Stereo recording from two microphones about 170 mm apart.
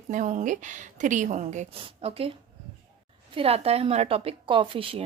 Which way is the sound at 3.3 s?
35° right (ahead or behind).